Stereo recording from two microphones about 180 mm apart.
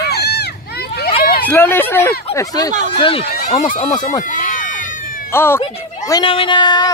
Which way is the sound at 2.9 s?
30° left (ahead or behind).